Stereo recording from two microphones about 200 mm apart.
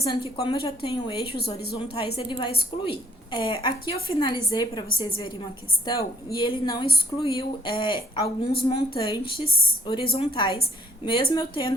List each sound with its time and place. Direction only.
0.1 s a woman's voice: 25° left (ahead or behind)